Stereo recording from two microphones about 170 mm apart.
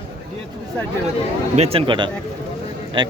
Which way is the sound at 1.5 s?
35° right (ahead or behind).